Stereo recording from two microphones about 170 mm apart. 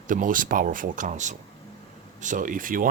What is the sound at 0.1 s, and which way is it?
Speech, 50° right (ahead or behind).